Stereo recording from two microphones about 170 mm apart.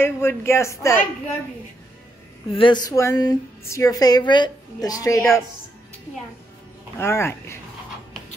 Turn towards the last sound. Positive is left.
turn(degrees=15)  # may be behind; listen again after turning